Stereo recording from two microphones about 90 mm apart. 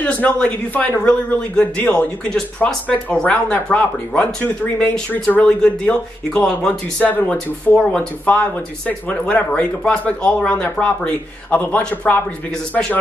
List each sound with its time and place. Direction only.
0.0 s a man's voice: 15° left (ahead or behind)
7.1 s a man's voice: 20° left (ahead or behind)